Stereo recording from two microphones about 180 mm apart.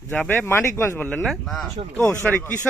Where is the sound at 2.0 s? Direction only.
10° left (ahead or behind).